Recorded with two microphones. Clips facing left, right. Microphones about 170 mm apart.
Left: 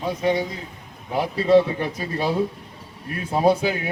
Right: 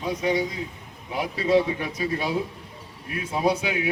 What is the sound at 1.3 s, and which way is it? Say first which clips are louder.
Speech: left 4 dB; 35° left (ahead or behind).